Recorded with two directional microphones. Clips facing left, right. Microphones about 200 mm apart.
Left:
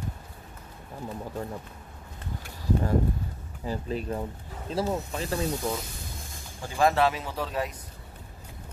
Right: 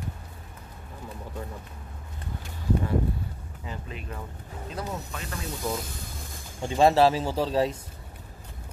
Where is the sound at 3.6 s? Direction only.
35° left (ahead or behind).